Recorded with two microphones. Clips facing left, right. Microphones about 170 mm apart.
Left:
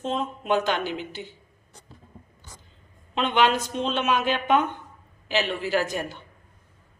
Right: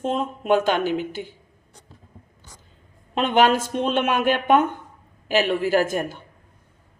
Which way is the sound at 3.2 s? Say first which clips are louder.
Right 4 dB; 45° right (ahead or behind).